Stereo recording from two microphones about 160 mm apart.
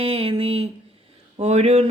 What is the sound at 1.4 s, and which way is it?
Speech, 40° right (ahead or behind).